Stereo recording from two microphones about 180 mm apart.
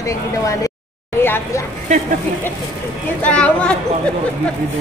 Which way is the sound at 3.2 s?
5° left (ahead or behind).